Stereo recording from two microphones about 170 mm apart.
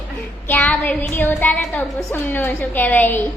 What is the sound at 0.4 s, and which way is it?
Speech, 10° left (ahead or behind).